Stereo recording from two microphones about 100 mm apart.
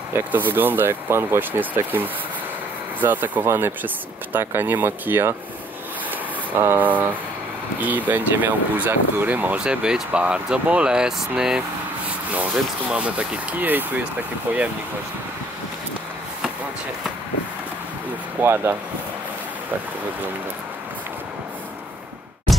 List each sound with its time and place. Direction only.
0.1 s speech: 20° right (ahead or behind)
6.5 s speech: 25° right (ahead or behind); by 11.6 s 5° right (ahead or behind)
12.9 s speech: 10° right (ahead or behind)
18.4 s speech: 25° right (ahead or behind)